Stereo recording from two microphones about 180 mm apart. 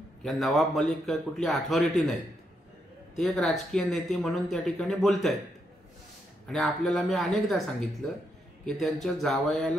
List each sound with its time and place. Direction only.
0.2 s speech: centre (ahead or behind)
3.2 s speech: centre (ahead or behind)
6.4 s speech: centre (ahead or behind)